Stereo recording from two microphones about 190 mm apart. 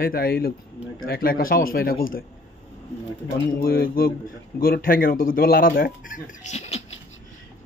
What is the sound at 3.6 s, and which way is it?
Speech, 50° left (ahead or behind).